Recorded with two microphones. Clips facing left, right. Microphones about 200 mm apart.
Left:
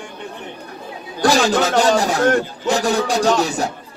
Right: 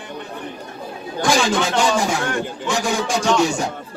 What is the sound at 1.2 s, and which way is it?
Speech, 40° left (ahead or behind).